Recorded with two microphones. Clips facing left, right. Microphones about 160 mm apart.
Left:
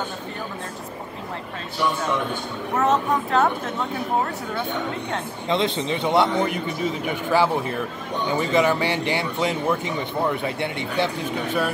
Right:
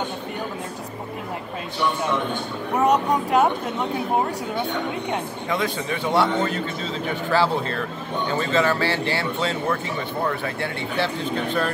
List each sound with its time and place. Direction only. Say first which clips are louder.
2.7 s speech: right 1 dB; 15° right (ahead or behind)
5.5 s speech: left 3 dB; 25° left (ahead or behind)